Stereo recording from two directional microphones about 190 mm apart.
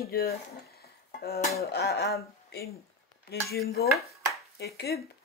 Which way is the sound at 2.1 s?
60° left (ahead or behind).